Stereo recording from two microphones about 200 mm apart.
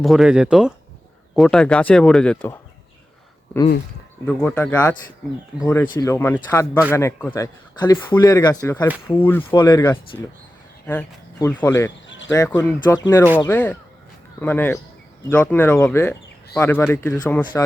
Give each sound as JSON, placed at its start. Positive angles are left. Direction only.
{"t": 0.0, "sound": "speech", "side_deg": 0}
{"t": 4.3, "sound": "speech", "side_deg": 5}
{"t": 11.3, "sound": "speech", "side_deg": 15}
{"t": 12.0, "sound": "a sound", "side_deg": 65}
{"t": 12.3, "sound": "speech", "side_deg": 10}